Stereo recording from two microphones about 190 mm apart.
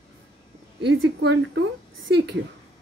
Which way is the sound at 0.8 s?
60° right (ahead or behind).